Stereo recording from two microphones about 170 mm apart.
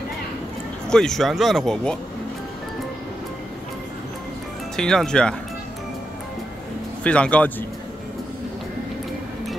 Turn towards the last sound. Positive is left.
turn(degrees=10)  # may be behind; listen again after turning